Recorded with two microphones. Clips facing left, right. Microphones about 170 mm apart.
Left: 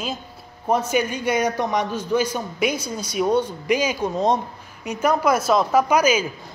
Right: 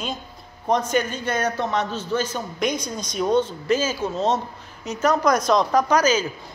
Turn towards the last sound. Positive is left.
turn(degrees=10)  # may be behind; listen again after turning